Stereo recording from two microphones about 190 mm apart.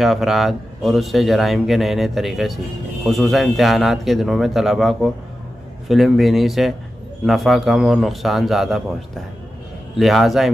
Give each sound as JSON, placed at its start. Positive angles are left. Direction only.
{"t": 0.0, "sound": "speech", "side_deg": 0}
{"t": 9.9, "sound": "speech", "side_deg": 0}